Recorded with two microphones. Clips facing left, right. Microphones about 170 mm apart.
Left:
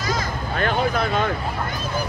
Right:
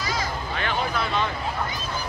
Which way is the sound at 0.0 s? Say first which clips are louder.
Left 3 dB; 45° left (ahead or behind).